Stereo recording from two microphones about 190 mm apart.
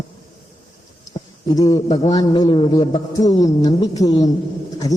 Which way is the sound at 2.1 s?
25° left (ahead or behind).